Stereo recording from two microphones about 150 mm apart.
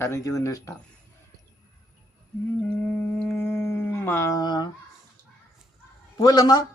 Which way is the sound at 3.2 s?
10° left (ahead or behind).